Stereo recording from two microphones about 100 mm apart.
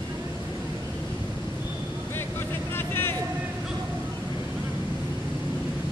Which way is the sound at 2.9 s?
20° left (ahead or behind).